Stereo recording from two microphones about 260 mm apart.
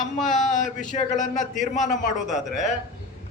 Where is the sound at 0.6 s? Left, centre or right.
Left.